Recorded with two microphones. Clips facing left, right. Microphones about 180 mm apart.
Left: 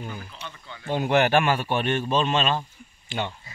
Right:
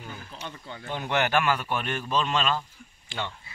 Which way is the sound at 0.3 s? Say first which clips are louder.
Right 2 dB; 45° right (ahead or behind).